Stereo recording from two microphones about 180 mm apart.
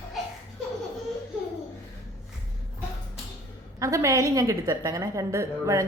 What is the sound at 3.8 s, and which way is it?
A woman's voice, 15° right (ahead or behind).